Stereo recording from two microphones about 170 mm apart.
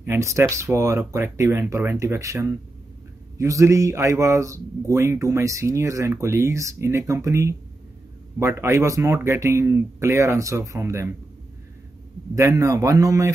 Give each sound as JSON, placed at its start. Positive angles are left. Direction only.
{"t": 0.0, "sound": "speech", "side_deg": -15}
{"t": 12.4, "sound": "speech", "side_deg": -20}